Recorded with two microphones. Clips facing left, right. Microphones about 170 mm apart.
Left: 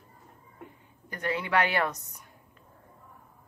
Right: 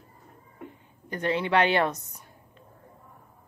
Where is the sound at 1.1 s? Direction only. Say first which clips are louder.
Right 4 dB; 25° right (ahead or behind).